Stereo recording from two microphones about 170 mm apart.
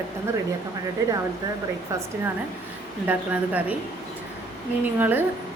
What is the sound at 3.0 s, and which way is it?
Speech, 10° right (ahead or behind).